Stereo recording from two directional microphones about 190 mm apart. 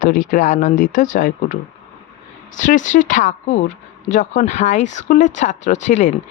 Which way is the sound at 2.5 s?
40° left (ahead or behind).